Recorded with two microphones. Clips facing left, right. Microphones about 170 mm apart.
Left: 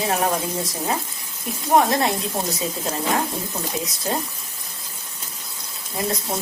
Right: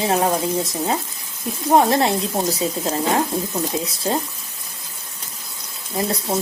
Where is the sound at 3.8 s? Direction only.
30° right (ahead or behind).